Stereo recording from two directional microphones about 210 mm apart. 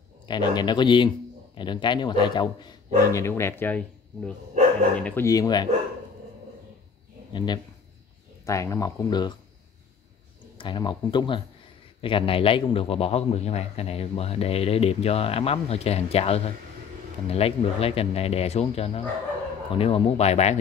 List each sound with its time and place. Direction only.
0.3 s a man's voice: 20° left (ahead or behind)
7.3 s a man's voice: 20° left (ahead or behind)
10.6 s a man's voice: 20° left (ahead or behind)